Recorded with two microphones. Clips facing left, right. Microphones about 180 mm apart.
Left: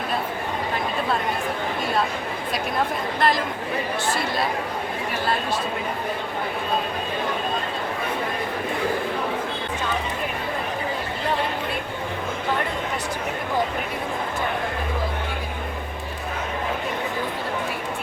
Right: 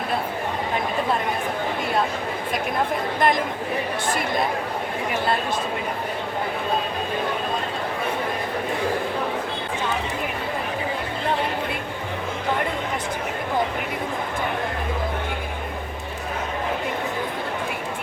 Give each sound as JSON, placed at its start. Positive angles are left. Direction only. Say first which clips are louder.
{"t": 3.2, "sound": "speech", "louder": "right 1 dB", "side_deg": -20}